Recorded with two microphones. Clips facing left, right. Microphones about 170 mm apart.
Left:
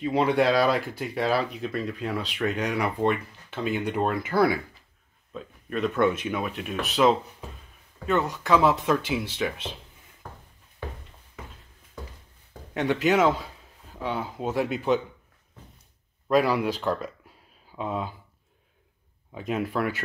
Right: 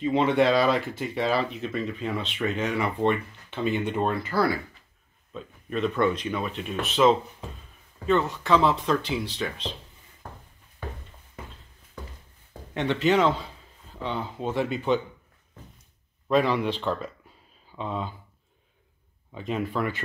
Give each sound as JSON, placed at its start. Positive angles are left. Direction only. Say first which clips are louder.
{"t": 0.0, "sound": "speech", "louder": "right 1 dB", "side_deg": 5}
{"t": 4.3, "sound": "speech", "louder": "left 4 dB", "side_deg": 20}
{"t": 5.3, "sound": "speech", "louder": "even", "side_deg": 0}
{"t": 12.7, "sound": "speech", "louder": "even", "side_deg": 5}
{"t": 16.3, "sound": "speech", "louder": "left 1 dB", "side_deg": 0}
{"t": 19.3, "sound": "speech", "louder": "left 1 dB", "side_deg": 5}